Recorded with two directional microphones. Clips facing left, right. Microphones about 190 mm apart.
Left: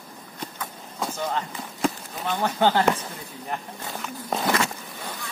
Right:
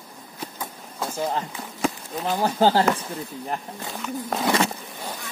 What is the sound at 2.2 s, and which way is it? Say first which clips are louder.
Speech: right 2 dB; 35° right (ahead or behind).